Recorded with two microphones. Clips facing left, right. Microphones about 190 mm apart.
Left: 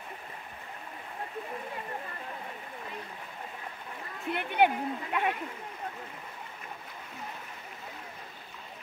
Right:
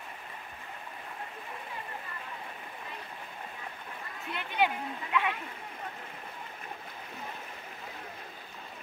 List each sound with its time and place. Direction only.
4.3 s speech: 55° left (ahead or behind)